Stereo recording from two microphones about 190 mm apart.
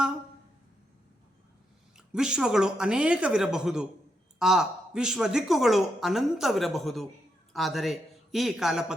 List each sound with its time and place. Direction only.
2.0 s speech: 5° right (ahead or behind)